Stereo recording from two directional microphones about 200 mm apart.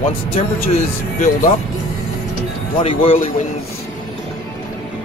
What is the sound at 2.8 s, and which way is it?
Speech, 25° left (ahead or behind).